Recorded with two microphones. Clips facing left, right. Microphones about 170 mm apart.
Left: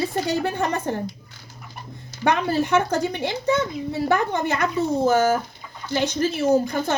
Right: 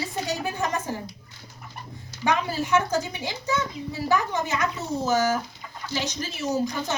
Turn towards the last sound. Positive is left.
turn(degrees=55)  # may be behind; listen again after turning